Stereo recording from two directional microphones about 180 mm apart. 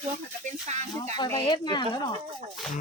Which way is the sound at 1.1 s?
25° left (ahead or behind).